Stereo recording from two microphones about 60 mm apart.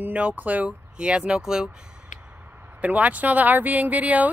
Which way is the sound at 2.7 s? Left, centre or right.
Right.